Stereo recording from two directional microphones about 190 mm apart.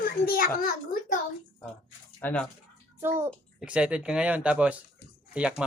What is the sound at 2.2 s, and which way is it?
Speech, 10° left (ahead or behind).